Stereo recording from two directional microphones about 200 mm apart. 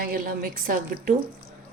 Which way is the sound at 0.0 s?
45° right (ahead or behind).